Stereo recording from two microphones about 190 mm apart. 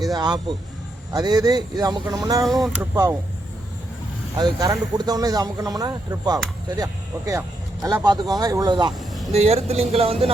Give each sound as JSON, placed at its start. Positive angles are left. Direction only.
{"t": 0.0, "sound": "speech", "side_deg": -20}
{"t": 4.4, "sound": "speech", "side_deg": -20}
{"t": 9.3, "sound": "speech", "side_deg": -35}